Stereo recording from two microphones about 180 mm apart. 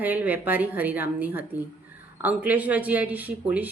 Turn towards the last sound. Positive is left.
turn(degrees=-10)  # may be behind; listen again after turning